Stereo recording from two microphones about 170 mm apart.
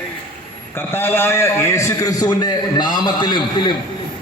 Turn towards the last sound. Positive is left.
turn(degrees=30)  # may be behind; listen again after turning